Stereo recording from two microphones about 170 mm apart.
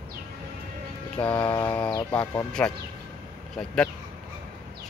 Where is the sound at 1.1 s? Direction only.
5° left (ahead or behind).